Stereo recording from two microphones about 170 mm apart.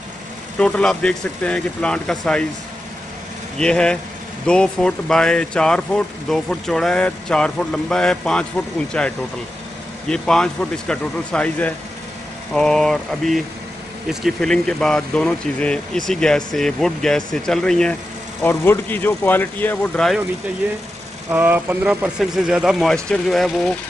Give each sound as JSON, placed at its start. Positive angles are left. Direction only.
{"t": 0.6, "sound": "speech", "side_deg": 5}
{"t": 3.5, "sound": "speech", "side_deg": 5}
{"t": 21.3, "sound": "speech", "side_deg": -10}